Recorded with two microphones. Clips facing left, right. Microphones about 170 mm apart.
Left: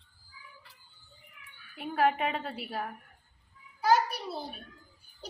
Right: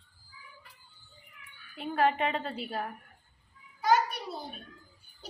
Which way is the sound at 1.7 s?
5° left (ahead or behind).